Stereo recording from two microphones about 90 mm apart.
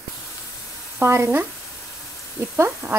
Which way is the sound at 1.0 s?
30° right (ahead or behind).